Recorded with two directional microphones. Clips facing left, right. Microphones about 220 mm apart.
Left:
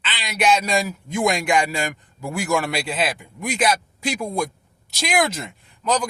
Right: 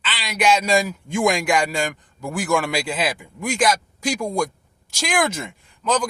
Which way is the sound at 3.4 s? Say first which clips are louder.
Right 1 dB; 45° right (ahead or behind).